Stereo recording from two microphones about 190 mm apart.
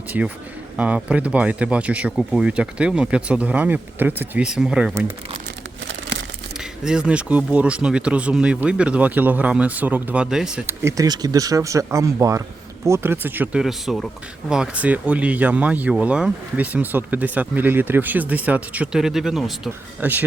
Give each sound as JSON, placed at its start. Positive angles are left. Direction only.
{"t": 0.1, "sound": "speech", "side_deg": -5}
{"t": 5.9, "sound": "crumpling", "side_deg": -75}
{"t": 6.8, "sound": "speech", "side_deg": -5}